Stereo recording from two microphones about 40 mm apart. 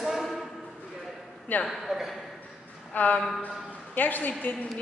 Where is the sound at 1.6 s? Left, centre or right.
Centre.